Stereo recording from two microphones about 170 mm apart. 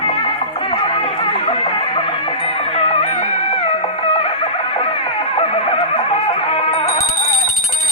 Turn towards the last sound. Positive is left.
turn(degrees=35)  # may be behind; listen again after turning